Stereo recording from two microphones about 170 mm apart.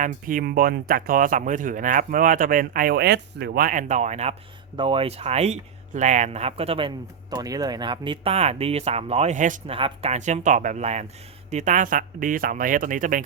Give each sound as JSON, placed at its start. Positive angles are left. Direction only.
{"t": 0.0, "sound": "speech", "side_deg": -55}
{"t": 9.6, "sound": "speech", "side_deg": -35}